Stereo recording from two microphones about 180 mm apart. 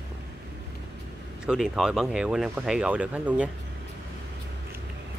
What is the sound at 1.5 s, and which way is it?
Speech, 5° right (ahead or behind).